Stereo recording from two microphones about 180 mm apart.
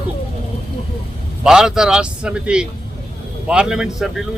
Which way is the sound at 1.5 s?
5° right (ahead or behind).